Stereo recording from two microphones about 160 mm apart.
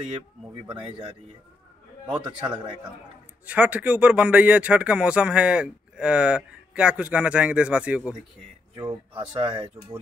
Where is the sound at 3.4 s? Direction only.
10° right (ahead or behind).